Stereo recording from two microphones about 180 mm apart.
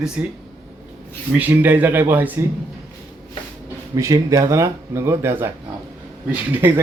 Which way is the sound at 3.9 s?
20° right (ahead or behind).